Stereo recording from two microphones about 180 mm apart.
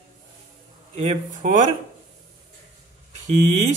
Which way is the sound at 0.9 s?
40° right (ahead or behind).